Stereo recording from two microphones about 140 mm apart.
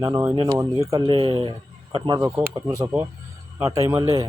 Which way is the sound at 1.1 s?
40° right (ahead or behind).